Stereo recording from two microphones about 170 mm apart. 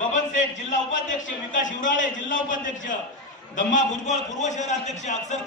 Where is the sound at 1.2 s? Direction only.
50° left (ahead or behind).